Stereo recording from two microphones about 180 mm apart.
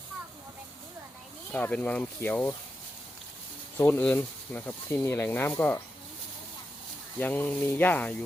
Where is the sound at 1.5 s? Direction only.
10° left (ahead or behind).